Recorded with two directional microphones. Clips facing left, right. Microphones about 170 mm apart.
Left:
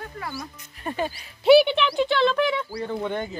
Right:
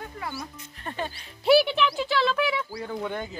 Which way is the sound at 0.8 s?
10° left (ahead or behind).